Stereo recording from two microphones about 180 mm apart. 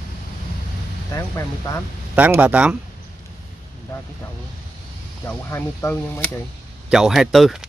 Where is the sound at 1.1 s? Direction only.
15° left (ahead or behind).